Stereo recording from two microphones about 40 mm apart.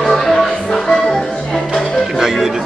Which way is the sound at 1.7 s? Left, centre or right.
Centre.